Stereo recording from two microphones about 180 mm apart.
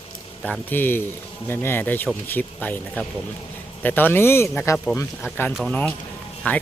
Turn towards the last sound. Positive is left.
turn(degrees=10)  # may be behind; listen again after turning